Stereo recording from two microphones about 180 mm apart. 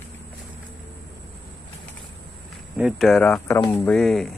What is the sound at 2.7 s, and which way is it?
Speech, centre (ahead or behind).